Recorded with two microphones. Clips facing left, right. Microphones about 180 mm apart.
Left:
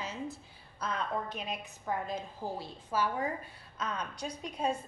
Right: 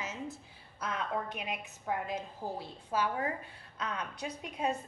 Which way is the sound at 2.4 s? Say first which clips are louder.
Left 1 dB; 15° right (ahead or behind).